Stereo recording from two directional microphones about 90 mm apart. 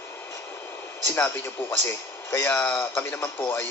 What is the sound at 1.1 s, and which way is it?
A man's voice, 25° left (ahead or behind).